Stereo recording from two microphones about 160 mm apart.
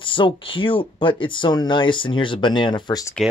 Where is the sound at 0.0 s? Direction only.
30° left (ahead or behind).